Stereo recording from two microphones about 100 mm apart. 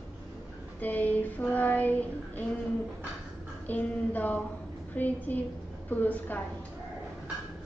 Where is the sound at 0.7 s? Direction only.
15° left (ahead or behind).